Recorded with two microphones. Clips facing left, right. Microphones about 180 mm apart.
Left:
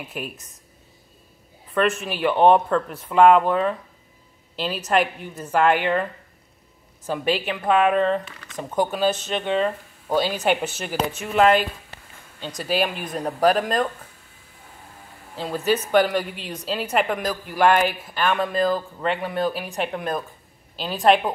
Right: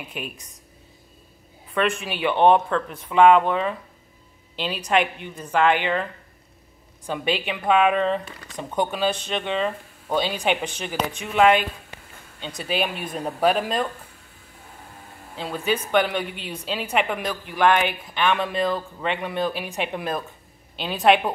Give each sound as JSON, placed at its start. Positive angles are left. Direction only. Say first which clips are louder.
{"t": 0.1, "sound": "speech", "louder": "left 2 dB", "side_deg": 0}
{"t": 1.7, "sound": "speech", "louder": "left 2 dB", "side_deg": 0}
{"t": 7.1, "sound": "speech", "louder": "left 2 dB", "side_deg": 0}
{"t": 8.3, "sound": "a sound", "louder": "right 3 dB", "side_deg": -35}
{"t": 8.5, "sound": "speech", "louder": "left 2 dB", "side_deg": 0}
{"t": 11.9, "sound": "a sound", "louder": "right 1 dB", "side_deg": -15}
{"t": 12.4, "sound": "speech", "louder": "left 2 dB", "side_deg": 0}
{"t": 15.3, "sound": "speech", "louder": "left 3 dB", "side_deg": 5}